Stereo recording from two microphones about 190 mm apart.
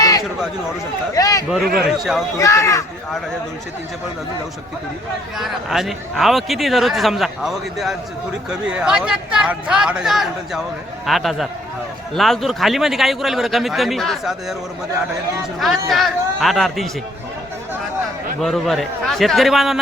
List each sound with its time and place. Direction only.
1.1 s speech: 20° left (ahead or behind)
1.9 s a man's voice: centre (ahead or behind)
2.4 s speech: 15° left (ahead or behind)
5.4 s a man's voice: centre (ahead or behind)
15.5 s a man's voice: centre (ahead or behind)
18.3 s a man's voice: centre (ahead or behind)